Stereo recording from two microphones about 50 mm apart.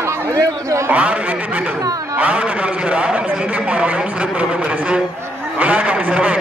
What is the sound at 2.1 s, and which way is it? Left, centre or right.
A man's voice, right.